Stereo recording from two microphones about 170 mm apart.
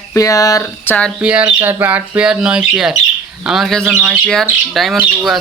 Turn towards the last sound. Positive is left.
turn(degrees=0)  # may be behind; listen again after turning